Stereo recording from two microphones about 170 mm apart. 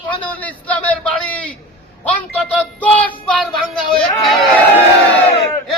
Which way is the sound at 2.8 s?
10° left (ahead or behind).